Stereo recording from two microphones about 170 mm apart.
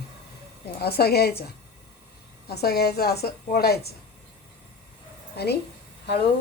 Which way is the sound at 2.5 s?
70° left (ahead or behind).